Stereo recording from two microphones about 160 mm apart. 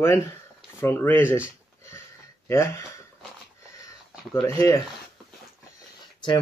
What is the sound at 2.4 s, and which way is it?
Speech, 15° left (ahead or behind).